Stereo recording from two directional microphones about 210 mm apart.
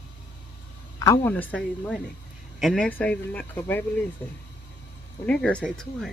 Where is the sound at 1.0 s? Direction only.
10° left (ahead or behind).